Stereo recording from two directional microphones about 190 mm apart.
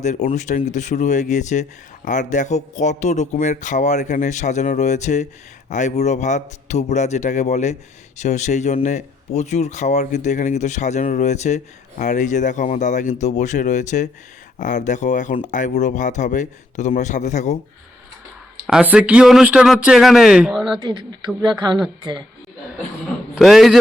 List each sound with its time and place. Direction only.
0.0 s speech: 40° left (ahead or behind)
18.7 s speech: 5° right (ahead or behind)
21.4 s speech: 25° right (ahead or behind)
23.3 s a man's voice: centre (ahead or behind)